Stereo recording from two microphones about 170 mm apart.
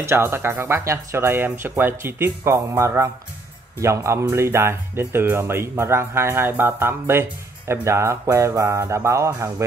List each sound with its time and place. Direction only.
0.0 s speech: 15° right (ahead or behind)